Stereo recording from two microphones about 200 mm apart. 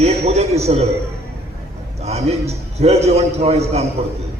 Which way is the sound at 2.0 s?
30° right (ahead or behind).